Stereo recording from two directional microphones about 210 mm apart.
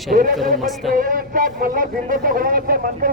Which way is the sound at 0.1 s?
40° right (ahead or behind).